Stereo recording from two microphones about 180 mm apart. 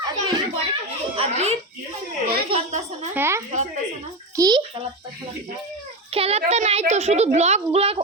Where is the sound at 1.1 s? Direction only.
35° right (ahead or behind).